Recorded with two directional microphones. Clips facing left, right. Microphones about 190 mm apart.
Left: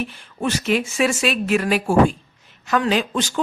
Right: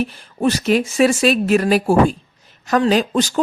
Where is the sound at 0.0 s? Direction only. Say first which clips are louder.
Right 6 dB; 40° right (ahead or behind).